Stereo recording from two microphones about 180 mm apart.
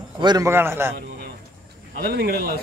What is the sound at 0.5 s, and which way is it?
Speech, 15° right (ahead or behind).